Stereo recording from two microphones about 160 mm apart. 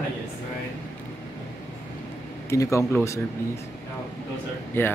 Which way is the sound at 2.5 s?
20° left (ahead or behind).